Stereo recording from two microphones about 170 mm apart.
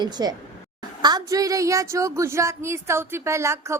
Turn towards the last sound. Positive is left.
turn(degrees=-15)  # may be behind; listen again after turning